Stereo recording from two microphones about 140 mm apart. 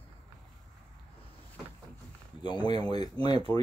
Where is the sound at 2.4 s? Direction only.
30° left (ahead or behind).